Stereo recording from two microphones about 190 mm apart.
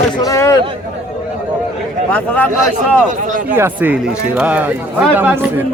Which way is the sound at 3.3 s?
45° right (ahead or behind).